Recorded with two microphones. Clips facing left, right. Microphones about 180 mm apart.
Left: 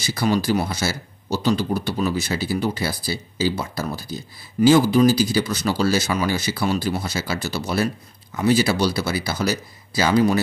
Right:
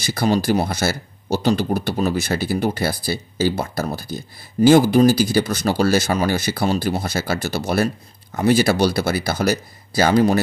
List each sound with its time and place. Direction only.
0.0 s speech: 50° right (ahead or behind)